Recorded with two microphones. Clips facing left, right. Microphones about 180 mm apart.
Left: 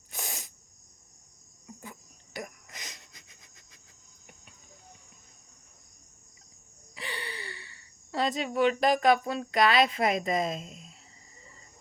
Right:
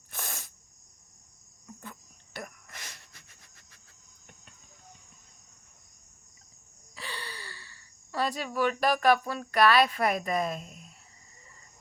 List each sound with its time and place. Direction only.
0.1 s sneeze: 15° left (ahead or behind)
1.6 s insect: 15° left (ahead or behind)
6.9 s speech: 20° left (ahead or behind)